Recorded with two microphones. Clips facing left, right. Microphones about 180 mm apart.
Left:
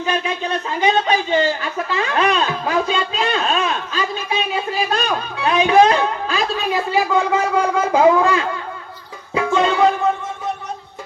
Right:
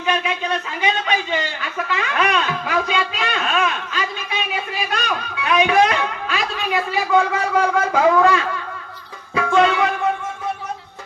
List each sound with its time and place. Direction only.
0.0 s speech: 35° left (ahead or behind)
9.3 s music: 25° left (ahead or behind)